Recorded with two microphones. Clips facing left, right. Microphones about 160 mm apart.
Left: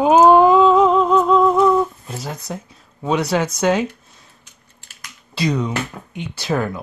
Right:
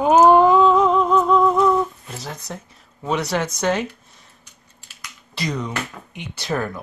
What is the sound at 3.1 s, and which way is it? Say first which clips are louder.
Speech: left 4 dB; 10° left (ahead or behind).